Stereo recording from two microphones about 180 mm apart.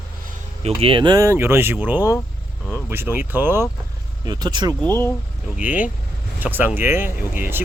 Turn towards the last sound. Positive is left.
turn(degrees=-10)  # may be behind; listen again after turning